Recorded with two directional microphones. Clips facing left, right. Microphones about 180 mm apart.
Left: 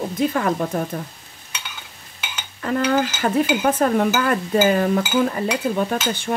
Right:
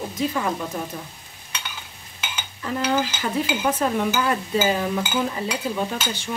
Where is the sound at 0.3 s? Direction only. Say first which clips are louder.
Left 5 dB; 55° left (ahead or behind).